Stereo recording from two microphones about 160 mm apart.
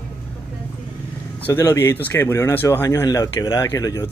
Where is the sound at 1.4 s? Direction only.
15° left (ahead or behind).